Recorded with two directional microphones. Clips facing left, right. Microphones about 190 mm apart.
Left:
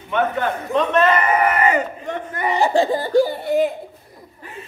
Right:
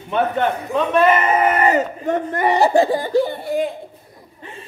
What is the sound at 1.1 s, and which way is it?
Speech, 25° right (ahead or behind).